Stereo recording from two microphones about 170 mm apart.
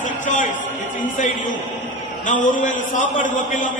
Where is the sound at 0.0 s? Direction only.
50° left (ahead or behind).